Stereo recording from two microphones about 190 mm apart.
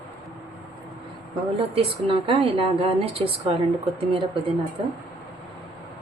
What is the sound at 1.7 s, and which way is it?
A woman's voice, 30° right (ahead or behind).